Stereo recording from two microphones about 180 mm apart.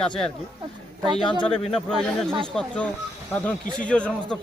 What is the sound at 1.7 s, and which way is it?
Speech, 5° left (ahead or behind).